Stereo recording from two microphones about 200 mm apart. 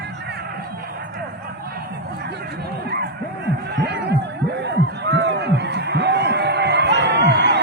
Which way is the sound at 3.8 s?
55° right (ahead or behind).